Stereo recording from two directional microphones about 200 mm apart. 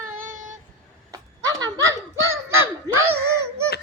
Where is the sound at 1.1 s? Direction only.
20° right (ahead or behind).